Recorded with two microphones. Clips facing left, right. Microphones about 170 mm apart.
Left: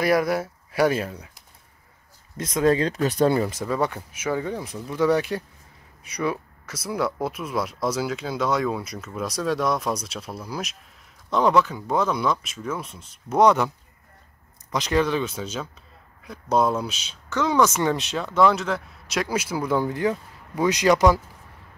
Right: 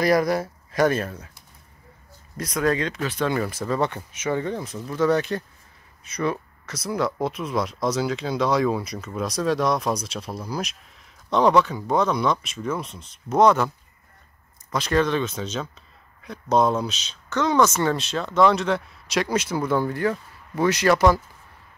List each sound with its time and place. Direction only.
0.0 s speech: 5° left (ahead or behind); by 3.3 s 40° left (ahead or behind)
3.3 s speech: 20° left (ahead or behind)
3.6 s speech: 10° left (ahead or behind)
14.7 s speech: 15° left (ahead or behind)